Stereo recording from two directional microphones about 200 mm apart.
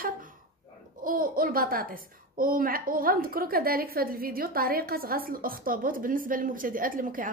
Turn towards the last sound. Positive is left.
turn(degrees=-45)  # may be behind; listen again after turning